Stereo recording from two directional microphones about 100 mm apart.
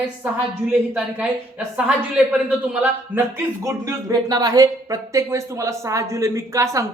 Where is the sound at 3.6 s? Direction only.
35° right (ahead or behind).